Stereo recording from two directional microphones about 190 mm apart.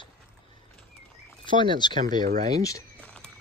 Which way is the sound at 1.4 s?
25° left (ahead or behind).